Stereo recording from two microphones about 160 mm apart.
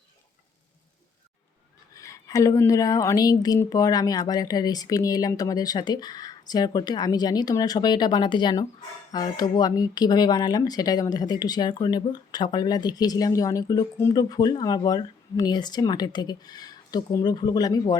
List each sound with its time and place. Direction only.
1.9 s speech: 20° left (ahead or behind)